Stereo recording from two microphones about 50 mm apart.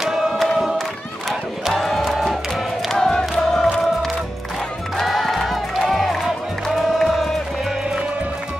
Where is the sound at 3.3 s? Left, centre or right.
Centre.